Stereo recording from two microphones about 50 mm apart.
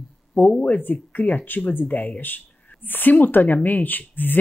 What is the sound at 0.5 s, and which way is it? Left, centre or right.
Speech, left.